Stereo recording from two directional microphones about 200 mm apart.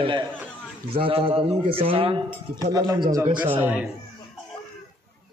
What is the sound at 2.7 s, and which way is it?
Speech, 15° right (ahead or behind).